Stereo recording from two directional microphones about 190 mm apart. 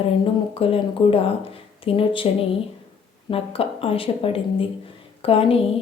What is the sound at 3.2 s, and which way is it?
A woman's voice, 30° left (ahead or behind).